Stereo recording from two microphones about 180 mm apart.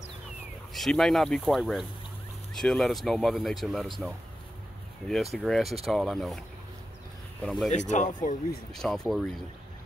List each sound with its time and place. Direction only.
0.7 s speech: centre (ahead or behind)
7.4 s speech: centre (ahead or behind)
7.7 s speech: 40° left (ahead or behind)
8.7 s speech: 5° left (ahead or behind)